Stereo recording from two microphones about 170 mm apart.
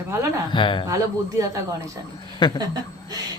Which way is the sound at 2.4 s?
30° left (ahead or behind).